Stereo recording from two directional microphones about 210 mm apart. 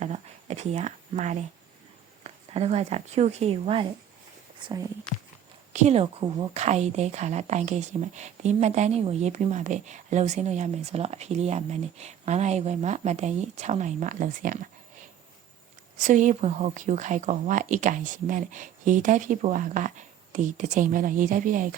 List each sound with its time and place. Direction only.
0.0 s a sound: 30° right (ahead or behind)
2.2 s speech: 30° right (ahead or behind)
5.7 s a woman's voice: 30° right (ahead or behind)
16.0 s a woman's voice: 35° right (ahead or behind)